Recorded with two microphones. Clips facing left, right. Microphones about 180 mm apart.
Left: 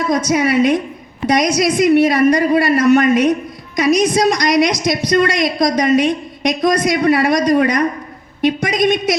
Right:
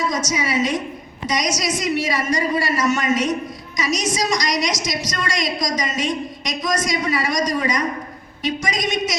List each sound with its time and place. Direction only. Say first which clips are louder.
0.1 s a woman's voice: left 8 dB; 55° left (ahead or behind)